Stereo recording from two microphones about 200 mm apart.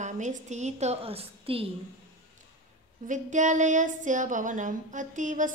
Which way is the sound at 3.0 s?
40° right (ahead or behind).